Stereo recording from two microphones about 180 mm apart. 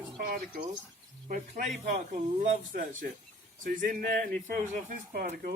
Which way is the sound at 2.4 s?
45° right (ahead or behind).